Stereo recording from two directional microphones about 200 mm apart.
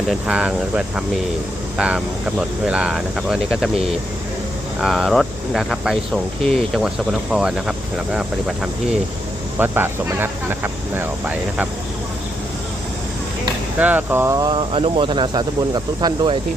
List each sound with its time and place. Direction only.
0.1 s speech: 5° right (ahead or behind)
1.8 s speech: 5° right (ahead or behind)
4.8 s speech: centre (ahead or behind)
9.6 s speech: 10° right (ahead or behind)
13.7 s speech: 10° right (ahead or behind)